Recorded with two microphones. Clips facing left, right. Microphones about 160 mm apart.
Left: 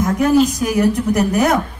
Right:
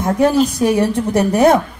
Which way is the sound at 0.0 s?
30° right (ahead or behind).